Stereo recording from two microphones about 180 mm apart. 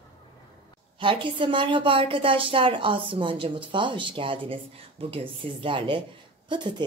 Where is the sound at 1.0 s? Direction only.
25° right (ahead or behind).